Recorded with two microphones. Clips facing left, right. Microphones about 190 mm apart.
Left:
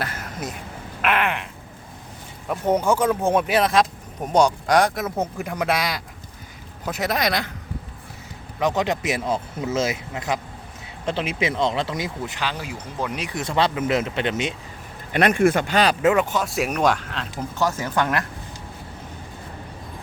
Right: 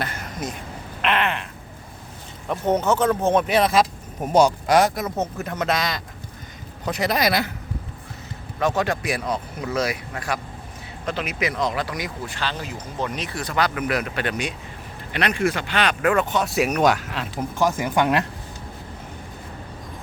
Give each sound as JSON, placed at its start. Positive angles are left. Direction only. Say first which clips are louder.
{"t": 0.0, "sound": "a sound", "louder": "right 1 dB", "side_deg": 5}
{"t": 1.0, "sound": "speech", "louder": "even", "side_deg": 10}
{"t": 2.5, "sound": "speech", "louder": "even", "side_deg": 10}
{"t": 5.1, "sound": "speech", "louder": "even", "side_deg": 10}
{"t": 8.5, "sound": "speech", "louder": "even", "side_deg": 15}
{"t": 13.4, "sound": "speech", "louder": "left 2 dB", "side_deg": 25}
{"t": 15.1, "sound": "speech", "louder": "left 5 dB", "side_deg": 50}
{"t": 16.0, "sound": "speech", "louder": "even", "side_deg": 20}
{"t": 16.3, "sound": "speech", "louder": "right 2 dB", "side_deg": 0}